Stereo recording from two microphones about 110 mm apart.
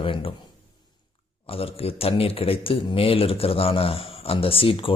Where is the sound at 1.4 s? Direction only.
60° left (ahead or behind).